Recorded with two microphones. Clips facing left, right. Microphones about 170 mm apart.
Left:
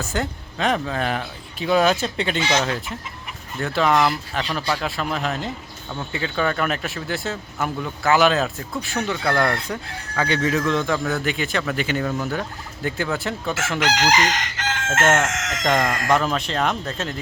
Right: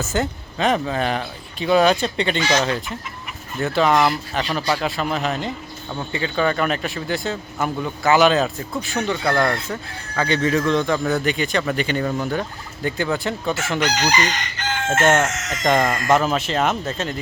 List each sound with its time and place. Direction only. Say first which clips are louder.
0.0 s speech: right 3 dB; centre (ahead or behind)
2.4 s speech: right 1 dB; 25° left (ahead or behind)
3.6 s speech: right 2 dB; centre (ahead or behind)
13.7 s chicken: left 2 dB; 90° left
15.0 s speech: right 2 dB; centre (ahead or behind)
15.3 s chicken: left 1 dB; 90° left
15.6 s speech: right 3 dB; centre (ahead or behind)